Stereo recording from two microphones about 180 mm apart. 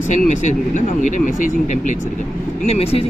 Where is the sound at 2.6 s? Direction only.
35° left (ahead or behind).